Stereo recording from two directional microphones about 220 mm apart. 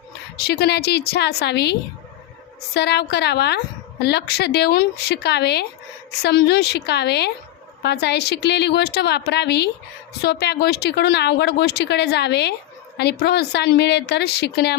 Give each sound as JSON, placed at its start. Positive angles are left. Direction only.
{"t": 0.3, "sound": "speech", "side_deg": 45}
{"t": 2.7, "sound": "speech", "side_deg": 50}